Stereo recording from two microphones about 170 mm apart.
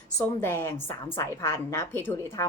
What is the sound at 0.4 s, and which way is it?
A woman's voice, 15° left (ahead or behind).